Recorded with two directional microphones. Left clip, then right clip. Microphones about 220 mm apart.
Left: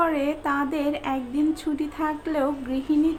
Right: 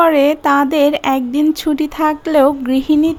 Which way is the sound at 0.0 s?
45° right (ahead or behind).